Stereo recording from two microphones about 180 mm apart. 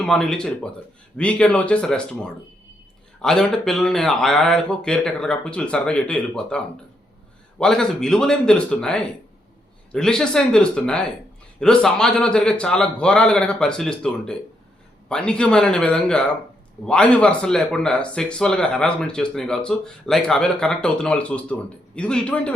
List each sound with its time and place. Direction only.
0.0 s speech: 5° left (ahead or behind)
7.6 s speech: 5° left (ahead or behind)